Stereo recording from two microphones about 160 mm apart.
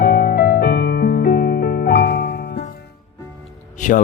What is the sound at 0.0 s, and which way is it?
Music, 80° left.